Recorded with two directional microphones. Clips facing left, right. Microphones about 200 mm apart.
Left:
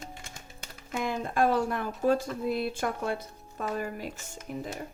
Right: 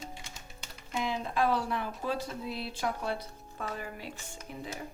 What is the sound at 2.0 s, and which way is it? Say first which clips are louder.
Speech: left 8 dB; 45° left (ahead or behind).